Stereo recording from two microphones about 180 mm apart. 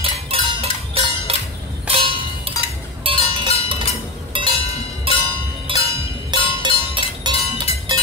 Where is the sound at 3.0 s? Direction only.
30° right (ahead or behind).